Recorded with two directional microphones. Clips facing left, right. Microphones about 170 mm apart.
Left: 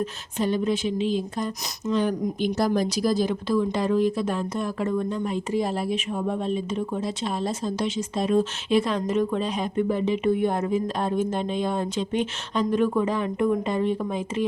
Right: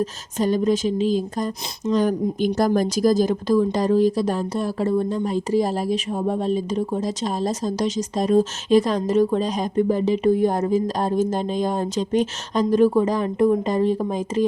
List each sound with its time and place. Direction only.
0.0 s speech: 40° right (ahead or behind)